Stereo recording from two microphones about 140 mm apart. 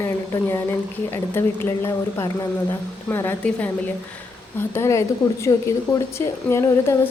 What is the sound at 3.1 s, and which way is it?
A woman's voice, 15° left (ahead or behind).